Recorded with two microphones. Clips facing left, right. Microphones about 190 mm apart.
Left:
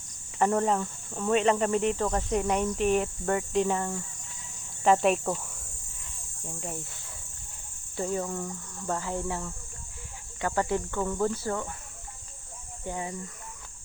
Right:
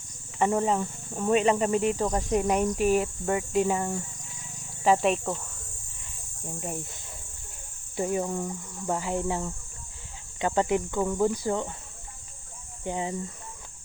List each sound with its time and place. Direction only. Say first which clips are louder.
0.3 s speech: even; 5° right (ahead or behind)
0.8 s speech: right 2 dB; 15° right (ahead or behind)
4.8 s speech: even; centre (ahead or behind)
7.9 s speech: right 3 dB; 15° right (ahead or behind)
12.8 s speech: right 4 dB; 20° right (ahead or behind)